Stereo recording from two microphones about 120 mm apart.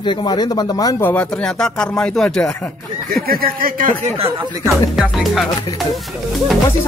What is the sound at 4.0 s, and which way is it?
Speech, 55° right (ahead or behind).